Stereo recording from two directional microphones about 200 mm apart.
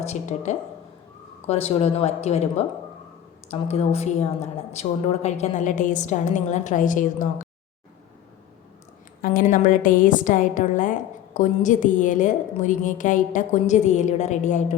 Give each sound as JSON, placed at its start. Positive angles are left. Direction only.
{"t": 0.0, "sound": "a woman's voice", "side_deg": 35}
{"t": 9.2, "sound": "a woman's voice", "side_deg": 45}